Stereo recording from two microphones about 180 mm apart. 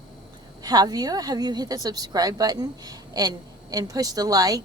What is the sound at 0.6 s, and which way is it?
A woman's voice, 20° right (ahead or behind).